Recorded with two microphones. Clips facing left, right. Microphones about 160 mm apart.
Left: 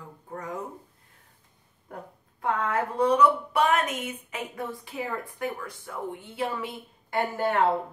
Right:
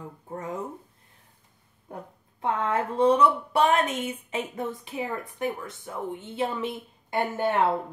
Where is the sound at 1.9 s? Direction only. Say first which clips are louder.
Right 1 dB; 25° right (ahead or behind).